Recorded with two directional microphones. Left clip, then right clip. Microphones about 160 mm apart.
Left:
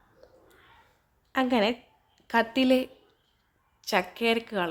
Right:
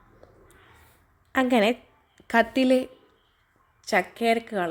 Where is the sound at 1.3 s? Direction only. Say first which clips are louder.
Right 4 dB; 20° right (ahead or behind).